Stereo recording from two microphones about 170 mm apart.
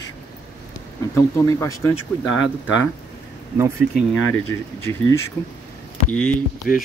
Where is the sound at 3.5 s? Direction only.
15° right (ahead or behind).